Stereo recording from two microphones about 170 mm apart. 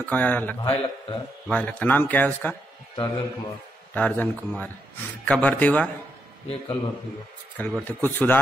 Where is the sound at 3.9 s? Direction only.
10° left (ahead or behind).